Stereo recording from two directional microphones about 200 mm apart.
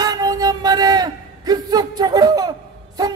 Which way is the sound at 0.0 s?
20° right (ahead or behind).